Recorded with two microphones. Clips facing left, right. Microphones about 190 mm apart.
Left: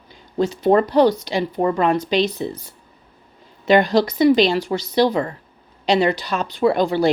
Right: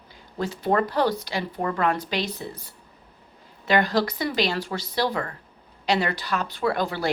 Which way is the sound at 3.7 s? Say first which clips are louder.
Left 7 dB; 20° left (ahead or behind).